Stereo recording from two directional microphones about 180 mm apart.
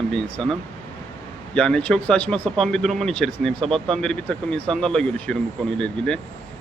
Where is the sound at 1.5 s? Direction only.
5° left (ahead or behind).